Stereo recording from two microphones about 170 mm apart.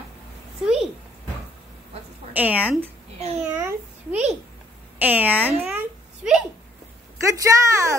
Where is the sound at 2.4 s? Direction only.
10° right (ahead or behind).